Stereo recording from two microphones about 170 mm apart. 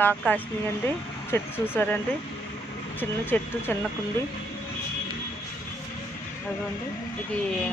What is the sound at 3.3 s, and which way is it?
Speech, 10° left (ahead or behind).